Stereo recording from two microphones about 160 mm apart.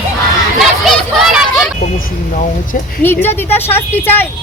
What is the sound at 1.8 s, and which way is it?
Vehicle, 55° left (ahead or behind).